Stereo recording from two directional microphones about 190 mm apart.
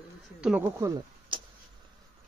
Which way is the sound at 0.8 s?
25° right (ahead or behind).